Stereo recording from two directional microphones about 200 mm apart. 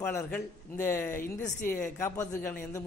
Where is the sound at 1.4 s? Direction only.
40° left (ahead or behind).